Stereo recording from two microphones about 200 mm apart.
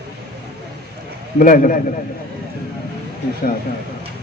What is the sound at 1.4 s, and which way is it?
Music, 45° left (ahead or behind).